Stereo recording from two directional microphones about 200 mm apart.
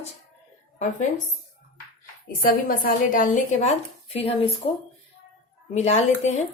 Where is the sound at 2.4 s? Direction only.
45° left (ahead or behind); by 4.7 s 30° left (ahead or behind).